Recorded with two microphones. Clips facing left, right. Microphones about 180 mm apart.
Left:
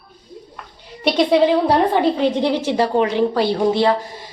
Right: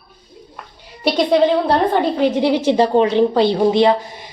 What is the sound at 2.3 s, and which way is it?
A woman's voice, 10° right (ahead or behind).